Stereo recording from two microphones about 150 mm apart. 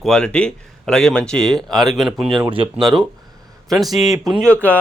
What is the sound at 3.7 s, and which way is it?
Speech, centre (ahead or behind).